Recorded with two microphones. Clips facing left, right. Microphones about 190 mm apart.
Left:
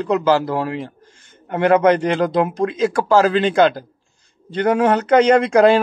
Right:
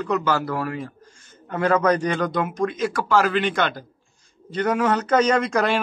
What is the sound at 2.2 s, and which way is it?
Speech, 30° left (ahead or behind).